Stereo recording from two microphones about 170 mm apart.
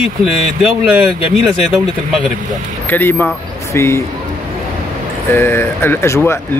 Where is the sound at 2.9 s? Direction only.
10° left (ahead or behind).